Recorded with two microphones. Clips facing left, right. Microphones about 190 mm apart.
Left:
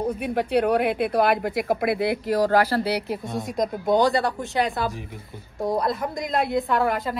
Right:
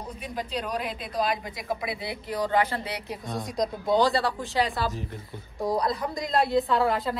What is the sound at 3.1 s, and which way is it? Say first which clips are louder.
Speech: left 5 dB; centre (ahead or behind).